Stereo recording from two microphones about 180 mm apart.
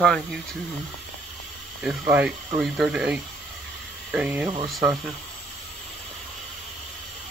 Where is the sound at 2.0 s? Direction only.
10° right (ahead or behind).